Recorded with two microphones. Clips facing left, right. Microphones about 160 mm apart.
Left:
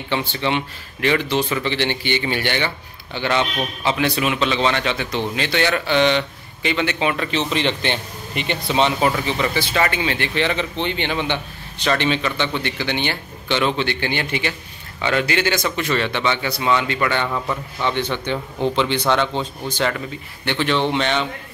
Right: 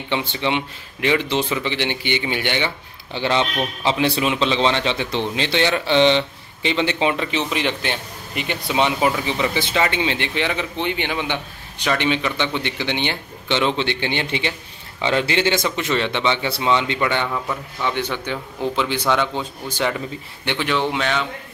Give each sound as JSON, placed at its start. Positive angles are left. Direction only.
{"t": 0.1, "sound": "speech", "side_deg": -20}
{"t": 3.1, "sound": "speech", "side_deg": -30}